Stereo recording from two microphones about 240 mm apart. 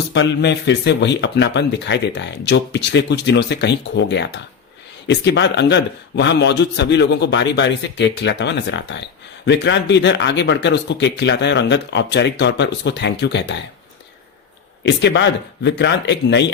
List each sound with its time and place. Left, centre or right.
0.1 s speech: left
14.8 s speech: left